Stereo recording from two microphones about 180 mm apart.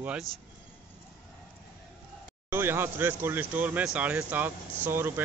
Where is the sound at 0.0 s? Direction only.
5° right (ahead or behind).